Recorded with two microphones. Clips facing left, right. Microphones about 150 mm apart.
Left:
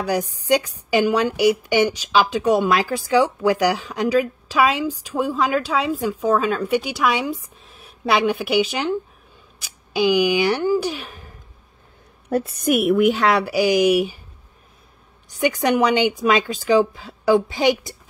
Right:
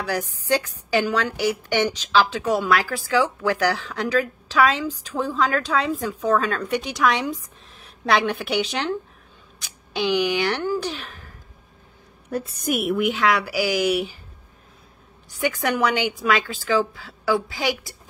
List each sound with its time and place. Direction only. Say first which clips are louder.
0.0 s a woman's voice: left 4 dB; 15° left (ahead or behind)
12.3 s a woman's voice: left 6 dB; 60° left (ahead or behind)
13.1 s a woman's voice: left 3 dB; 35° left (ahead or behind); by 14.1 s 15° left (ahead or behind)
15.4 s a woman's voice: left 4 dB; 15° left (ahead or behind)